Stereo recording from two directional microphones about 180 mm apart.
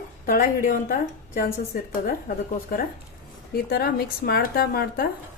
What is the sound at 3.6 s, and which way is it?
Speech, 60° left (ahead or behind).